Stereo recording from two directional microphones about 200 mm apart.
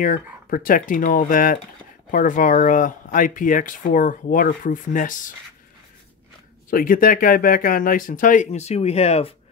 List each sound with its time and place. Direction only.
0.0 s speech: 45° left (ahead or behind)
6.7 s speech: 45° left (ahead or behind)